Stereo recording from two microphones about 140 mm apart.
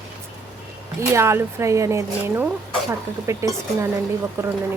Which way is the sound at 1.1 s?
20° right (ahead or behind).